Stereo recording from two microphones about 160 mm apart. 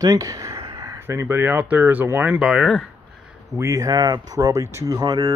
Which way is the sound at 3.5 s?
20° right (ahead or behind).